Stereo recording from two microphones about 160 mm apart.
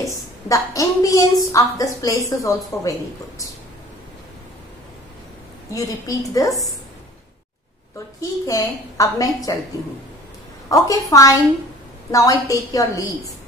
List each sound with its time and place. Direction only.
0.5 s a woman's voice: 20° left (ahead or behind)
5.7 s a woman's voice: 20° left (ahead or behind)
8.2 s a woman's voice: 20° left (ahead or behind)
10.7 s a woman's voice: 20° left (ahead or behind)